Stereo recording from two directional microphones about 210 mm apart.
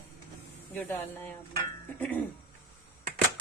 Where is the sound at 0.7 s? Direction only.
10° left (ahead or behind).